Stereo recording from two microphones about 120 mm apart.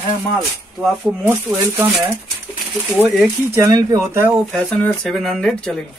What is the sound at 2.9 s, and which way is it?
Speech, 5° right (ahead or behind).